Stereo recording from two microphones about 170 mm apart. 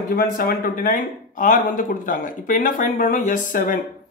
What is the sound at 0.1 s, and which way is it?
Speech, 60° left (ahead or behind).